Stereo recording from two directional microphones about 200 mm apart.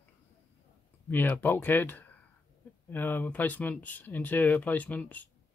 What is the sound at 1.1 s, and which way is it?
Speech, 10° left (ahead or behind).